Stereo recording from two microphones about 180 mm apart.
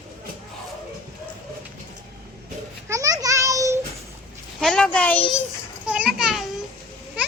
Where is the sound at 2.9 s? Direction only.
20° right (ahead or behind).